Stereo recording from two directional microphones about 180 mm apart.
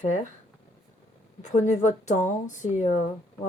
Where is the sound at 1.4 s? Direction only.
40° left (ahead or behind).